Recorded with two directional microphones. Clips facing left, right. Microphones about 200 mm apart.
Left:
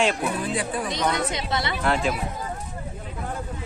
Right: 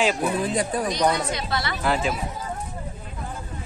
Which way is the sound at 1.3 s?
20° left (ahead or behind).